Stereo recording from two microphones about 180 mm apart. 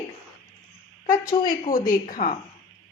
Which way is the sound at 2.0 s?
45° left (ahead or behind).